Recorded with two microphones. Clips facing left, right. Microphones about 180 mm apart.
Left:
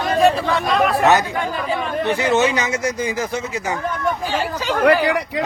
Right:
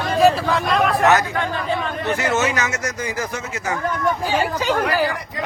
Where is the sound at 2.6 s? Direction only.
30° left (ahead or behind).